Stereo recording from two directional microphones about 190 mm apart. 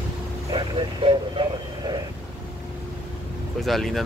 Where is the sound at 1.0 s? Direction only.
25° right (ahead or behind).